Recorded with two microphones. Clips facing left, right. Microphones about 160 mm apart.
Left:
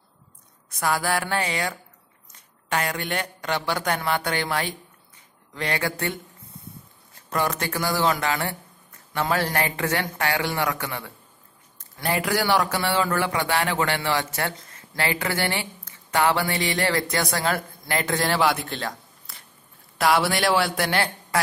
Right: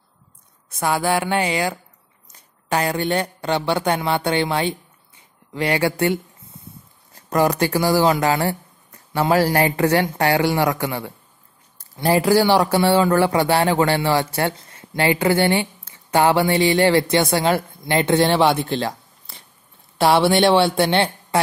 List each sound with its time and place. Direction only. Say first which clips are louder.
0.7 s speech: right 4 dB; 25° right (ahead or behind)
7.2 s speech: right 8 dB; 35° right (ahead or behind)